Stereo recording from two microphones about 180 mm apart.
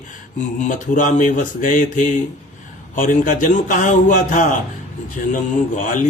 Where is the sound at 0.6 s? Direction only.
45° left (ahead or behind).